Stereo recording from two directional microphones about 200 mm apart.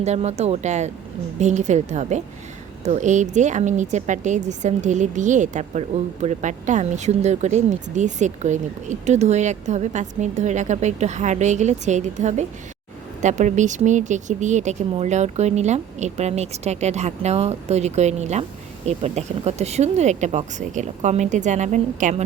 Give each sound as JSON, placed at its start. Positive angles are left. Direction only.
{"t": 0.0, "sound": "speech", "side_deg": -35}